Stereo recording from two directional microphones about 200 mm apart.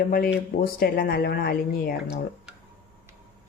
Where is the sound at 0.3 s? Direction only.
50° left (ahead or behind).